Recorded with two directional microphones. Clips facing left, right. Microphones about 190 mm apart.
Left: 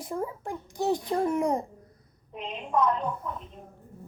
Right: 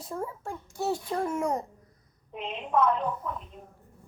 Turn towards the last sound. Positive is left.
turn(degrees=-5)  # may be behind; listen again after turning